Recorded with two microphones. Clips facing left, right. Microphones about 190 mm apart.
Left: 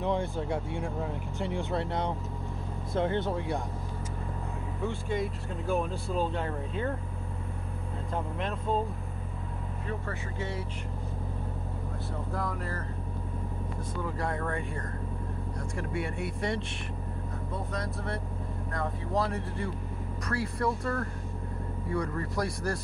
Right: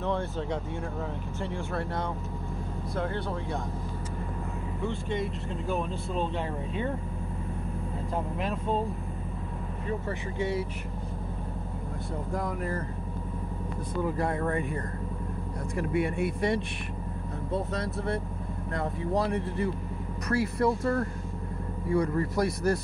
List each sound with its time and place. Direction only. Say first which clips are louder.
0.0 s speech: even; 15° left (ahead or behind)
4.8 s speech: even; 5° left (ahead or behind)
10.0 s speech: right 5 dB; 15° right (ahead or behind)
12.4 s speech: right 4 dB; 20° right (ahead or behind)
14.0 s speech: right 4 dB; 20° right (ahead or behind)
15.9 s speech: right 7 dB; 20° right (ahead or behind)
18.8 s speech: right 2 dB; 25° right (ahead or behind)